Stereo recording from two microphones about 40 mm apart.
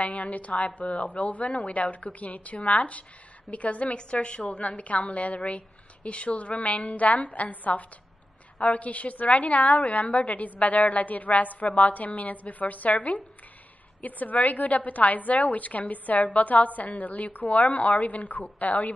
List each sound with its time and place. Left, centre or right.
0.0 s a woman's voice: left